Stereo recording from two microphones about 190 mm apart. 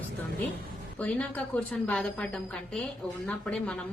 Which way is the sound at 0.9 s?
5° left (ahead or behind).